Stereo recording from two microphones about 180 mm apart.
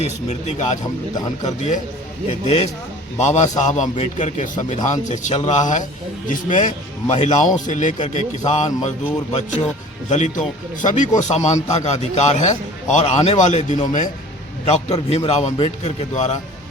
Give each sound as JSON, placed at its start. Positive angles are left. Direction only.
{"t": 0.0, "sound": "speech", "side_deg": 40}
{"t": 3.2, "sound": "a man's voice", "side_deg": 40}
{"t": 10.1, "sound": "a man's voice", "side_deg": 40}